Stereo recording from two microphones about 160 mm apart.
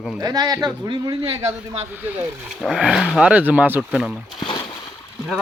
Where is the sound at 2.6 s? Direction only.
5° right (ahead or behind).